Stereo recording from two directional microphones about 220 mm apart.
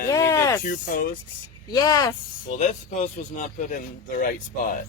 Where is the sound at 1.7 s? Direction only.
15° left (ahead or behind).